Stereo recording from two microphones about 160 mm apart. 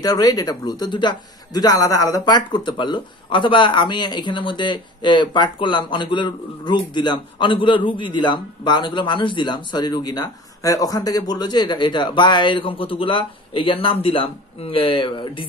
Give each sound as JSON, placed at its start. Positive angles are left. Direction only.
{"t": 0.0, "sound": "speech", "side_deg": 25}